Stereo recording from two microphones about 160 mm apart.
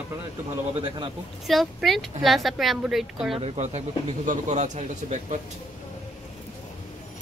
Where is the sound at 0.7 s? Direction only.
30° right (ahead or behind).